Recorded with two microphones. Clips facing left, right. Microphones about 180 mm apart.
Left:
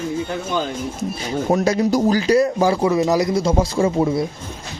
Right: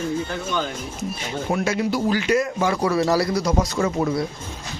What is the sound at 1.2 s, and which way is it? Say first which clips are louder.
Speech: left 6 dB; 40° left (ahead or behind).